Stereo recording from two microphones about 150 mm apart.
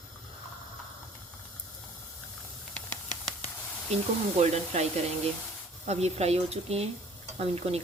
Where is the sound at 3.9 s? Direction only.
45° right (ahead or behind).